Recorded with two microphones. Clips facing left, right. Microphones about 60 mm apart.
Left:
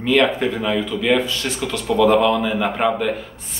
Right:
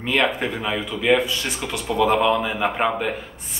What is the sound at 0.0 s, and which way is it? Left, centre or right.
Speech, centre.